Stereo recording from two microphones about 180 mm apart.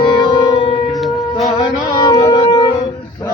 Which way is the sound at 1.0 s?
Centre (ahead or behind).